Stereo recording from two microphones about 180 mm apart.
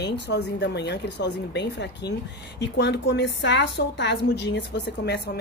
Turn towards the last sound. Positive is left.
turn(degrees=65)  # may be behind; listen again after turning